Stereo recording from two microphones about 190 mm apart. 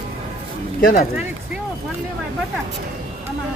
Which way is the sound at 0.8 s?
45° left (ahead or behind).